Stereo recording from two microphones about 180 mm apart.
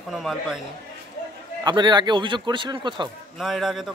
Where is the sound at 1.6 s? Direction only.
25° right (ahead or behind).